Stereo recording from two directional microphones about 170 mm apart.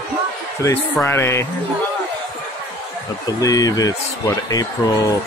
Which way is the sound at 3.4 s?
20° left (ahead or behind).